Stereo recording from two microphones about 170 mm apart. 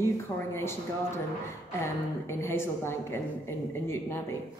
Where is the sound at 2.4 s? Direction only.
15° left (ahead or behind).